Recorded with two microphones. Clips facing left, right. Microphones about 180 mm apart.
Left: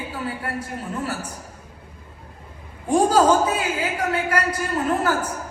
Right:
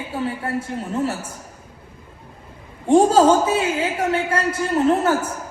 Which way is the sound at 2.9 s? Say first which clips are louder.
Right 3 dB; 25° right (ahead or behind).